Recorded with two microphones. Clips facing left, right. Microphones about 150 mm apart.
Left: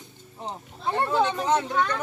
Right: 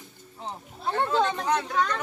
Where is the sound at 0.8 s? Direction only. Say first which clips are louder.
Left 1 dB; 15° left (ahead or behind).